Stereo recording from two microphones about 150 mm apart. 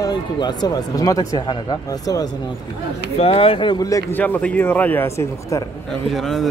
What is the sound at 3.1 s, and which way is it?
Speech, 40° left (ahead or behind).